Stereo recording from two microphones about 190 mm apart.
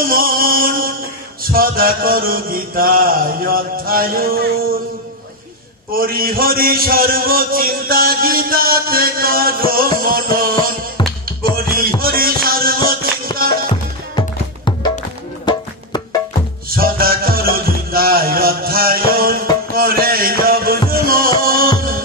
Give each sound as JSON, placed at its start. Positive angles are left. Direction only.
{"t": 0.0, "sound": "music", "side_deg": -50}
{"t": 1.4, "sound": "mantra", "side_deg": -50}
{"t": 5.9, "sound": "a man's voice", "side_deg": -50}
{"t": 11.5, "sound": "music", "side_deg": -50}
{"t": 14.1, "sound": "music", "side_deg": 25}
{"t": 16.7, "sound": "music", "side_deg": -50}
{"t": 19.7, "sound": "a sound", "side_deg": -50}
{"t": 20.9, "sound": "music", "side_deg": -50}